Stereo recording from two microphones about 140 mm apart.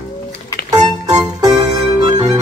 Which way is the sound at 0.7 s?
25° right (ahead or behind).